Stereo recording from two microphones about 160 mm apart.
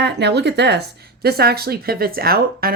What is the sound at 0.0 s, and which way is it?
Speech, 90° right.